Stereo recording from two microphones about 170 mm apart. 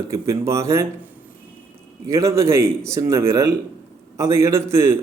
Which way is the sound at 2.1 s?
15° right (ahead or behind).